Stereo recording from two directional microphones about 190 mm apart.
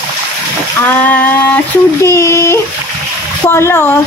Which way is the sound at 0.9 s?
10° left (ahead or behind).